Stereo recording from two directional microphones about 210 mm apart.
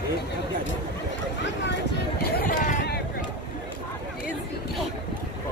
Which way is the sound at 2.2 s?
40° left (ahead or behind).